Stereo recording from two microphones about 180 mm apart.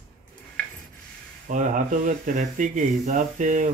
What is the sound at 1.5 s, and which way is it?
Speech, 45° right (ahead or behind).